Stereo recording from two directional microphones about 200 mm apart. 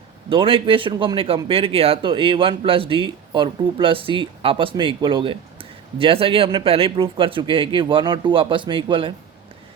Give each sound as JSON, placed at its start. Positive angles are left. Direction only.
{"t": 0.3, "sound": "speech", "side_deg": -25}